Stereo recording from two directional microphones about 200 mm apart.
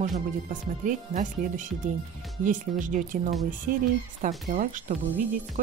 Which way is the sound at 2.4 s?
40° right (ahead or behind).